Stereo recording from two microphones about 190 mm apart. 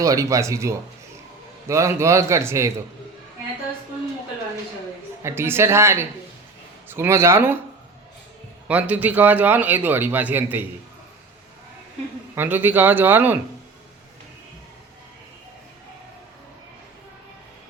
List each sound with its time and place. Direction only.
0.0 s a man's voice: 15° right (ahead or behind)
5.2 s a man's voice: 10° right (ahead or behind)
8.6 s a man's voice: 5° right (ahead or behind)
12.3 s a man's voice: 10° right (ahead or behind)